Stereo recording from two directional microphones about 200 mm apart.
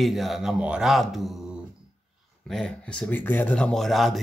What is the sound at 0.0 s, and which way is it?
Speech, centre (ahead or behind).